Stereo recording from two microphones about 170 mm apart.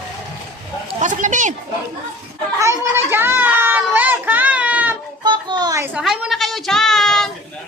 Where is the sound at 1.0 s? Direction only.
50° right (ahead or behind).